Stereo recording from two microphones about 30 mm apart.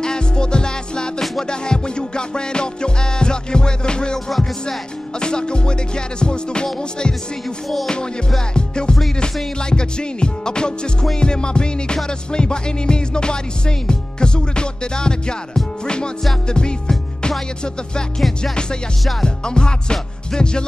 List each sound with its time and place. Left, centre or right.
0.0 s music: left
5.2 s music: left
8.5 s music: left
18.4 s music: left